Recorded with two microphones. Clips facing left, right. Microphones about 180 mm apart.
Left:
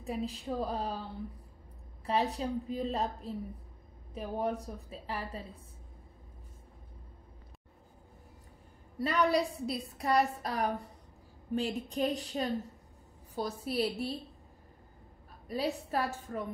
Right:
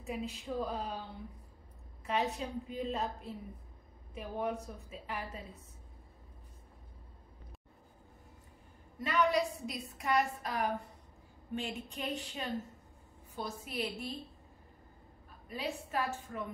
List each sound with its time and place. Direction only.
0.0 s a woman's voice: 35° left (ahead or behind)
2.0 s a woman's voice: 35° left (ahead or behind)
8.9 s a woman's voice: 35° left (ahead or behind)
15.4 s a woman's voice: 35° left (ahead or behind)